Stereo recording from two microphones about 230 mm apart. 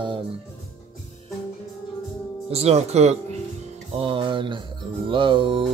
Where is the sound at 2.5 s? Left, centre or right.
Right.